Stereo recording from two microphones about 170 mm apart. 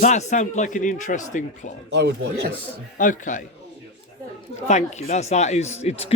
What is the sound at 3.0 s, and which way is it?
Speech, 50° left (ahead or behind).